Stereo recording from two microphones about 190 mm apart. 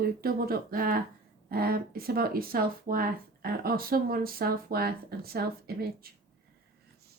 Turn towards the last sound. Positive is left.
turn(degrees=-55)  # may be behind; listen again after turning